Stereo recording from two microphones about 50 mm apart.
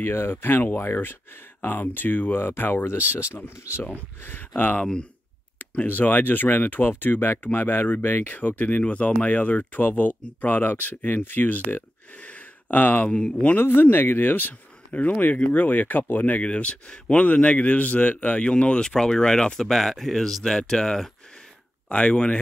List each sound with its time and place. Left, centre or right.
0.0 s speech: left
4.2 s speech: left
13.1 s speech: centre
13.6 s speech: left